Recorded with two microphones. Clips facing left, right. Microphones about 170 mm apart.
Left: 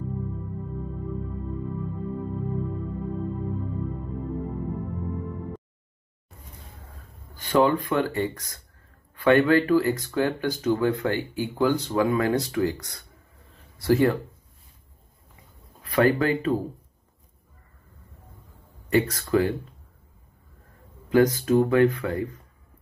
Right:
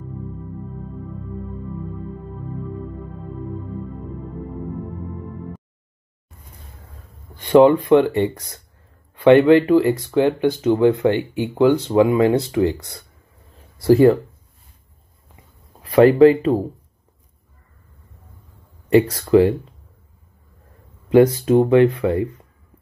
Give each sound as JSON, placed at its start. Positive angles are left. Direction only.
{"t": 7.9, "sound": "speech", "side_deg": -25}
{"t": 15.8, "sound": "speech", "side_deg": -30}
{"t": 18.9, "sound": "speech", "side_deg": -30}
{"t": 21.1, "sound": "speech", "side_deg": -30}